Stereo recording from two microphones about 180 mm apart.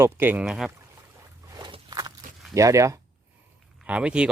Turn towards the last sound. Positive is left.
turn(degrees=-5)  # may be behind; listen again after turning